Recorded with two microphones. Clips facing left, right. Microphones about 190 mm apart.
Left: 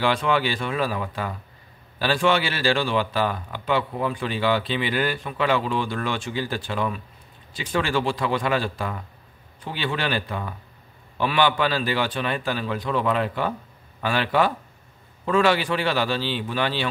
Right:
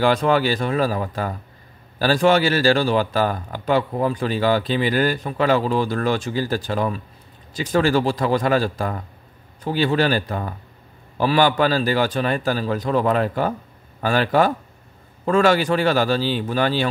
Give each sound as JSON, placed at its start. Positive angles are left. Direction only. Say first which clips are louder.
{"t": 0.0, "sound": "a man's voice", "louder": "right 5 dB", "side_deg": -40}